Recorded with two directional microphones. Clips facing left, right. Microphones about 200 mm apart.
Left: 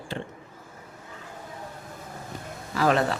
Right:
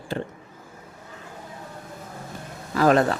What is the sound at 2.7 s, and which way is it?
Speech, 45° right (ahead or behind).